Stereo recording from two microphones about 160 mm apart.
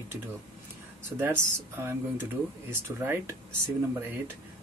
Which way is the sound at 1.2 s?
15° right (ahead or behind).